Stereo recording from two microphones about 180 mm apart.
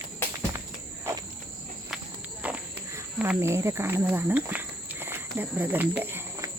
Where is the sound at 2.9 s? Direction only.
15° right (ahead or behind).